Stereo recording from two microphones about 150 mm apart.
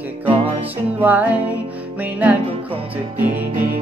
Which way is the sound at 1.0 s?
10° right (ahead or behind).